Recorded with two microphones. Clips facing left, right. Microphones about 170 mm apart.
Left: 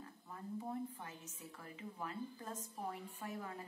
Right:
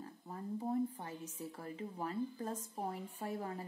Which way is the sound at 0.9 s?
35° right (ahead or behind).